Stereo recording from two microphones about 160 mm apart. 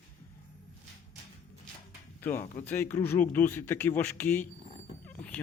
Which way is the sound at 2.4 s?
45° left (ahead or behind).